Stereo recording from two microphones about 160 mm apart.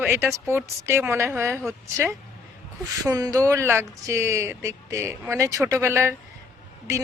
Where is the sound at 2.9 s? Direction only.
20° right (ahead or behind).